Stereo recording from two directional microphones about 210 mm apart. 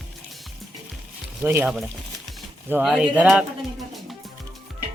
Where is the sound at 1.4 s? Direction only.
5° right (ahead or behind).